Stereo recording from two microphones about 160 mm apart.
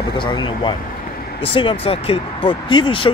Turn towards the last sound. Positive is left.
turn(degrees=30)  # may be behind; listen again after turning